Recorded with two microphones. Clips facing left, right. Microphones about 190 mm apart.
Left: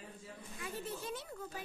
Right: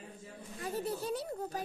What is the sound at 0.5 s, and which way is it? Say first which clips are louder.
A child's voice: right 7 dB; 40° right (ahead or behind).